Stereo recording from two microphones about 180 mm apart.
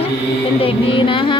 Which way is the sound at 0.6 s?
30° left (ahead or behind).